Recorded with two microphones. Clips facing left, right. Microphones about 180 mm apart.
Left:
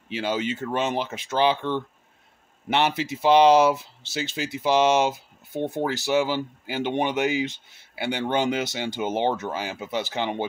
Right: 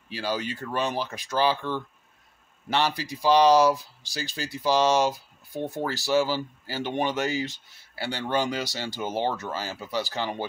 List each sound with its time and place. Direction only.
0.1 s speech: 20° left (ahead or behind)